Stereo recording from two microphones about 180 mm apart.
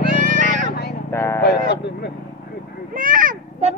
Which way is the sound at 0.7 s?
65° left (ahead or behind).